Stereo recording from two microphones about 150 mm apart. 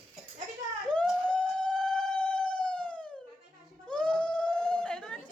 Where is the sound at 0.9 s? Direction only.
5° left (ahead or behind).